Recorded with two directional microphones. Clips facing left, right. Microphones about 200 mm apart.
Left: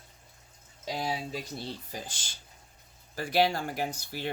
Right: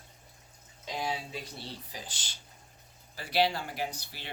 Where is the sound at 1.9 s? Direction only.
45° left (ahead or behind).